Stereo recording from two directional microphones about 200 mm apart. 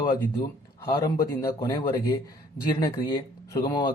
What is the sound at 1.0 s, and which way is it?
A man's voice, 15° left (ahead or behind).